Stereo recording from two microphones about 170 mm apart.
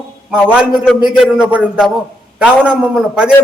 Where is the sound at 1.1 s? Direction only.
5° right (ahead or behind).